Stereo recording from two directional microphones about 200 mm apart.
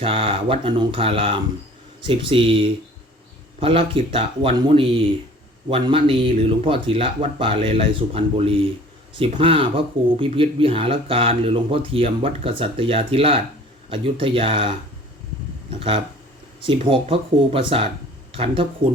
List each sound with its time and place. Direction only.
0.0 s speech: 30° right (ahead or behind)
16.6 s speech: 25° right (ahead or behind)